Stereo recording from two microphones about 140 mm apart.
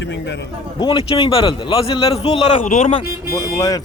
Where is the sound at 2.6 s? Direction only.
60° left (ahead or behind).